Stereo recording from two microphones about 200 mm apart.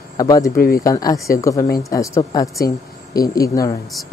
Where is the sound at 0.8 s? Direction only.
15° left (ahead or behind).